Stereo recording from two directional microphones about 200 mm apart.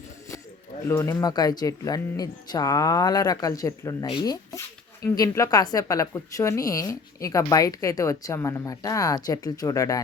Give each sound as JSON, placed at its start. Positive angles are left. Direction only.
{"t": 0.9, "sound": "speech", "side_deg": 15}